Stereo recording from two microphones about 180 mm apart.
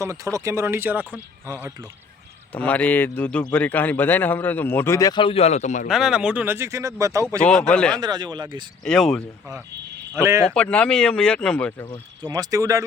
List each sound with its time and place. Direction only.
0.0 s speech: 15° right (ahead or behind)
2.5 s a man's voice: 10° left (ahead or behind); by 5.9 s 40° left (ahead or behind)
5.9 s speech: 5° right (ahead or behind)
7.3 s a man's voice: 5° left (ahead or behind)
7.9 s speech: 25° right (ahead or behind)
8.8 s speech: 5° left (ahead or behind)
10.2 s speech: 15° right (ahead or behind)
10.5 s speech: 5° left (ahead or behind)
12.3 s speech: 20° right (ahead or behind)